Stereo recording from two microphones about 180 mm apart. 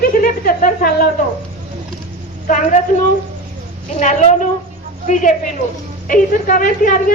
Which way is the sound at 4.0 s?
45° left (ahead or behind).